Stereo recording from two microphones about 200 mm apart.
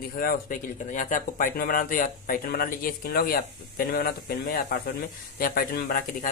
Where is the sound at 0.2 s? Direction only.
45° left (ahead or behind).